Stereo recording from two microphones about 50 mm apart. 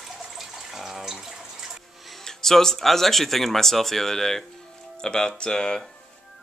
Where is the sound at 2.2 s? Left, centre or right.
Centre.